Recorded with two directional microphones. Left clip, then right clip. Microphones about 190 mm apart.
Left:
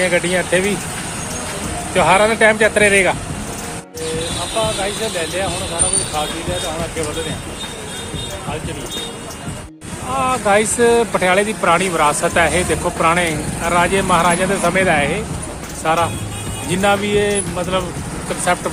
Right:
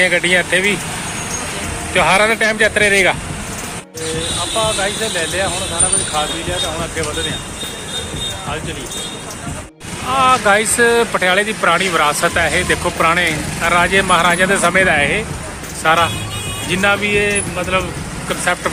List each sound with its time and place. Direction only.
0.0 s speech: centre (ahead or behind)
1.9 s speech: centre (ahead or behind)
10.1 s speech: centre (ahead or behind)
16.6 s speech: 15° left (ahead or behind)